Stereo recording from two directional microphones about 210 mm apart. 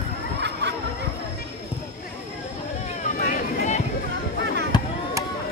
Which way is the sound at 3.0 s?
35° left (ahead or behind).